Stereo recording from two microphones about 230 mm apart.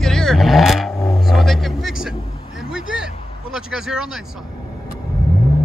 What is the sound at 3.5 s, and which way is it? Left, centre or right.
Vehicle, centre.